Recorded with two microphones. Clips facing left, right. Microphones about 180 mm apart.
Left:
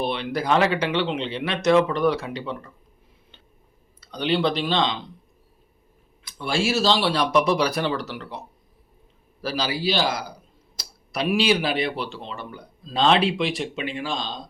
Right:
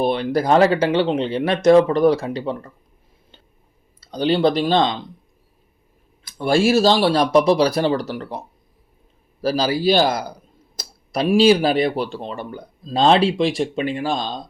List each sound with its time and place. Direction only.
0.0 s speech: 45° right (ahead or behind)
4.0 s speech: 40° right (ahead or behind)
6.3 s speech: 45° right (ahead or behind)
9.4 s a man's voice: 40° right (ahead or behind)
10.8 s tick-tock: 45° right (ahead or behind)
11.3 s speech: 40° right (ahead or behind)